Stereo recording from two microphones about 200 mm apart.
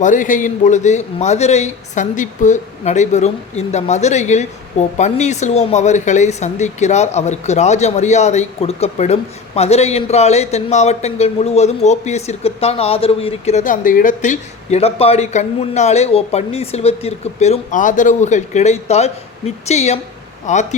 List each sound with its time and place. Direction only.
0.0 s speech: 40° left (ahead or behind)